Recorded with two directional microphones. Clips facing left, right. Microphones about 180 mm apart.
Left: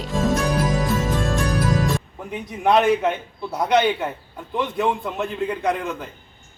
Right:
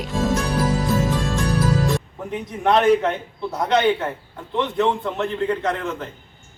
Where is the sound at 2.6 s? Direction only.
15° left (ahead or behind).